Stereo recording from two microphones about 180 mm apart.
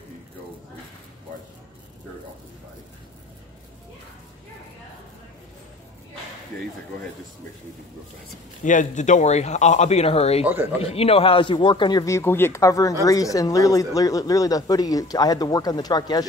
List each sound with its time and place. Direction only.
8.6 s speech: 45° left (ahead or behind)
10.4 s speech: 10° right (ahead or behind)
10.8 s speech: 35° left (ahead or behind)